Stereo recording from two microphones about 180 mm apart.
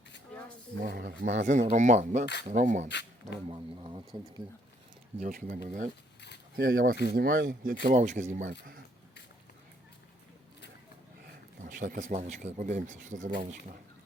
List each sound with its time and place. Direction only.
0.8 s speech: 60° right (ahead or behind); by 2.9 s 45° right (ahead or behind)
2.9 s speech: 75° left (ahead or behind)
3.5 s speech: 25° right (ahead or behind)
5.2 s speech: 50° right (ahead or behind)
11.6 s speech: 45° right (ahead or behind)